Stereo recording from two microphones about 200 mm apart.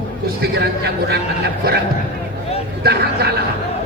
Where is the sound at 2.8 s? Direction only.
55° right (ahead or behind).